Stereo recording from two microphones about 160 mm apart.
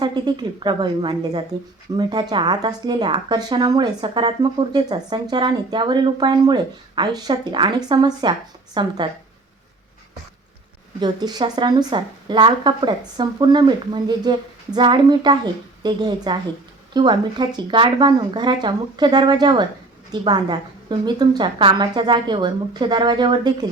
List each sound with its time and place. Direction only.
0.0 s a woman's voice: 25° right (ahead or behind)
11.0 s a woman's voice: 25° right (ahead or behind)